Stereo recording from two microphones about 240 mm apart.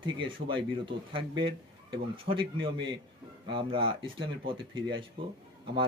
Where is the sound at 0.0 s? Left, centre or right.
Right.